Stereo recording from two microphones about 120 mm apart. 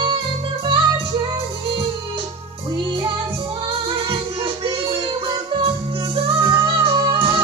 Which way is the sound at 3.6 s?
45° right (ahead or behind).